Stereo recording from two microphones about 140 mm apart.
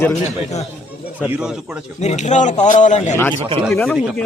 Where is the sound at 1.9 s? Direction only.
55° left (ahead or behind).